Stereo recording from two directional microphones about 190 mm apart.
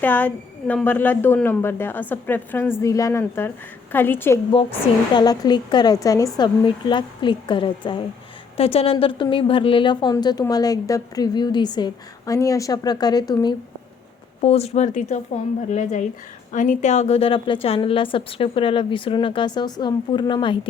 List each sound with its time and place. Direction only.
0.0 s a woman's voice: 10° left (ahead or behind)
14.4 s a woman's voice: 35° left (ahead or behind)